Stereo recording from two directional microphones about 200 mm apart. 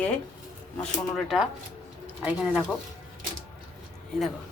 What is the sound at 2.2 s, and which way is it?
Speech, 5° right (ahead or behind).